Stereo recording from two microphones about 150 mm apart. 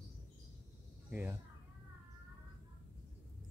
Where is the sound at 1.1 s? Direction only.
10° right (ahead or behind).